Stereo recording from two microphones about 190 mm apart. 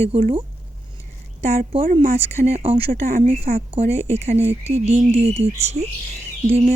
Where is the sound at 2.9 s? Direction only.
45° right (ahead or behind).